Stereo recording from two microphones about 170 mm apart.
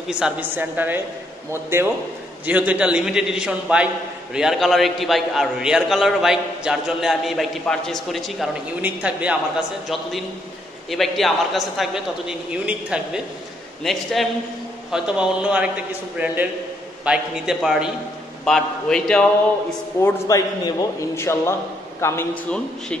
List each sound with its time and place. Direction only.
0.1 s a woman's voice: 10° right (ahead or behind)
10.9 s a man's voice: centre (ahead or behind)
20.0 s a man's voice: 15° left (ahead or behind)